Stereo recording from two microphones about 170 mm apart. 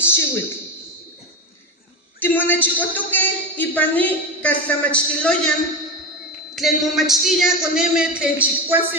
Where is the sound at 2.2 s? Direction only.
10° left (ahead or behind).